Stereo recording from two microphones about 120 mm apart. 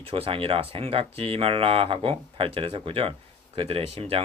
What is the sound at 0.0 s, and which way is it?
Speech, 50° right (ahead or behind).